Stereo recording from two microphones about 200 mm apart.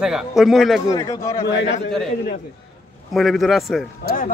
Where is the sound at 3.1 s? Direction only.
Centre (ahead or behind).